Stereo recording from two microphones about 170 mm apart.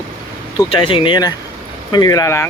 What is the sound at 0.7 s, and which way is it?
Speech, 30° left (ahead or behind).